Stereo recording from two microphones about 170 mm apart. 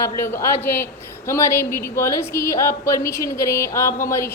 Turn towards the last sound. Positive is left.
turn(degrees=15)  # may be behind; listen again after turning